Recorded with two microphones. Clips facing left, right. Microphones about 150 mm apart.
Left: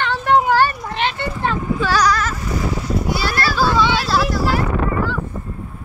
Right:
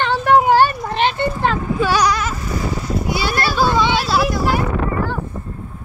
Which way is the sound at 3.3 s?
20° right (ahead or behind).